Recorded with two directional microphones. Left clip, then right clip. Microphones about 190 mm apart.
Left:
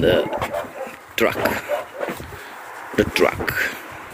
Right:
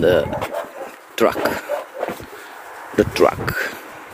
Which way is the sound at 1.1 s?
25° right (ahead or behind).